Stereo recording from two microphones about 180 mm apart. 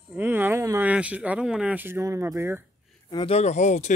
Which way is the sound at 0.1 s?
10° right (ahead or behind).